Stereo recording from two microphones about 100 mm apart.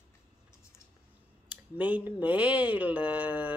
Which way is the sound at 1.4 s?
15° right (ahead or behind).